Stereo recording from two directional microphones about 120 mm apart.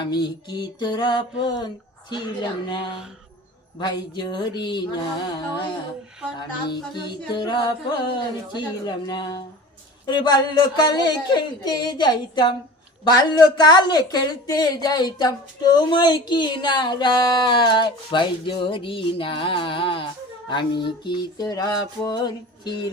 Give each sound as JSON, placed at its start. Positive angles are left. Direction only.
{"t": 0.0, "sound": "speech", "side_deg": 40}
{"t": 6.7, "sound": "speech", "side_deg": 40}